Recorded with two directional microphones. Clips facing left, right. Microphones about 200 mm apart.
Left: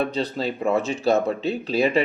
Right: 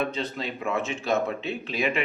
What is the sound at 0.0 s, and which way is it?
Speech, 35° left (ahead or behind).